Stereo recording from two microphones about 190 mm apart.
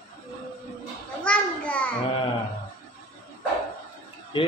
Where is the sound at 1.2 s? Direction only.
5° left (ahead or behind).